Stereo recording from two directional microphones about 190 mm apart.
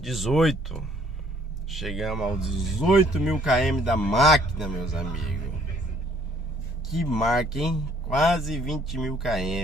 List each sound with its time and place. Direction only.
0.0 s a man's voice: centre (ahead or behind)
6.9 s a man's voice: centre (ahead or behind)